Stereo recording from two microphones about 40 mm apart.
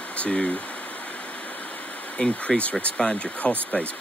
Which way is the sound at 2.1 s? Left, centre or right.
Left.